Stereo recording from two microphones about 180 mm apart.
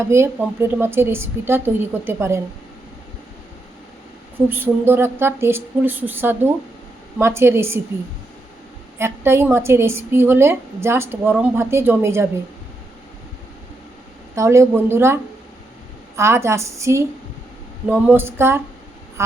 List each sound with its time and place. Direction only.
0.1 s a woman's voice: 15° right (ahead or behind)
4.4 s a woman's voice: 10° right (ahead or behind)
9.0 s a woman's voice: 15° right (ahead or behind)
14.3 s a woman's voice: 15° right (ahead or behind)